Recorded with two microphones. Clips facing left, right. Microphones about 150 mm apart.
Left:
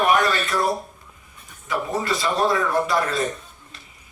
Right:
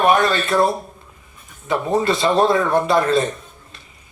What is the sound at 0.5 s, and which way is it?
Speech, 60° right (ahead or behind).